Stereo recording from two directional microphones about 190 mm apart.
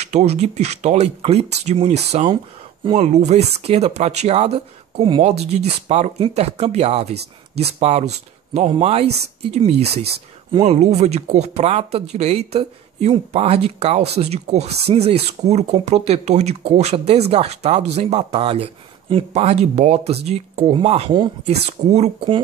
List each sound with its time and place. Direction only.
0.0 s speech: 35° right (ahead or behind)